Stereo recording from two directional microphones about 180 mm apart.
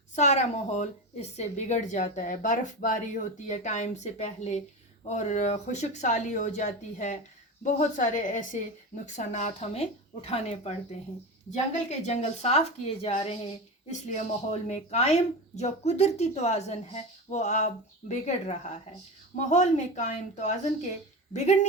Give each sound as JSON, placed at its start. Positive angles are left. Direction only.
{"t": 0.2, "sound": "a woman's voice", "side_deg": 40}